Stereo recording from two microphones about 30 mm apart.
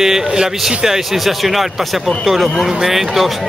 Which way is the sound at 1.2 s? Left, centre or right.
Centre.